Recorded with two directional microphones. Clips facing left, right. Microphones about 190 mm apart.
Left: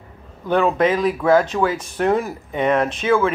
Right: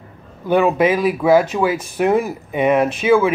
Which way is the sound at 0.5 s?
10° right (ahead or behind).